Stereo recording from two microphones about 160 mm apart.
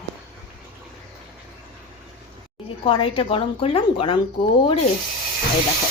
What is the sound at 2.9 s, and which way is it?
A woman's voice, 35° left (ahead or behind).